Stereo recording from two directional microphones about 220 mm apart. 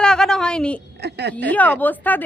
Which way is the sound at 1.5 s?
5° left (ahead or behind).